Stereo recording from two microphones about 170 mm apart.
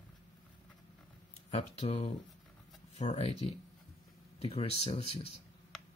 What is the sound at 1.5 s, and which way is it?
Speech, 35° left (ahead or behind).